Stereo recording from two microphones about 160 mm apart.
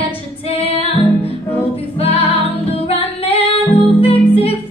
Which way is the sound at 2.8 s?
35° left (ahead or behind).